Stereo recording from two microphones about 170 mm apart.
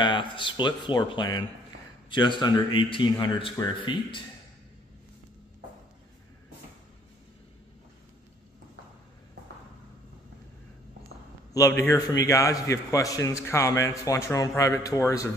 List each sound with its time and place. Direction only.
0.0 s a man's voice: 30° left (ahead or behind)
11.5 s a man's voice: 20° left (ahead or behind)